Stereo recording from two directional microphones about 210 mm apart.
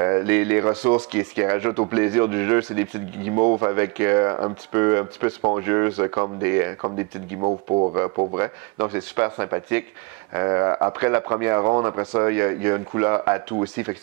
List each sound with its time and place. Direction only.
0.0 s speech: 15° right (ahead or behind)
3.3 s speech: 25° right (ahead or behind)
3.7 s speech: 15° right (ahead or behind)
7.3 s speech: 25° right (ahead or behind)
8.4 s speech: 15° right (ahead or behind)